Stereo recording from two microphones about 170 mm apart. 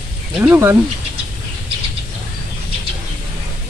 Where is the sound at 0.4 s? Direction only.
15° right (ahead or behind).